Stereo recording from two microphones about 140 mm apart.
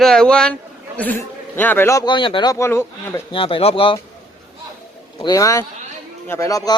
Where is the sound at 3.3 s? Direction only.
40° left (ahead or behind).